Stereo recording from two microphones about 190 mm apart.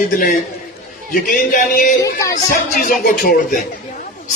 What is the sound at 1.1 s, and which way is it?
Speech, 50° left (ahead or behind).